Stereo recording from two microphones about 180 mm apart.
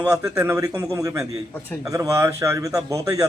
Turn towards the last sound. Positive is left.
turn(degrees=-20)  # may be behind; listen again after turning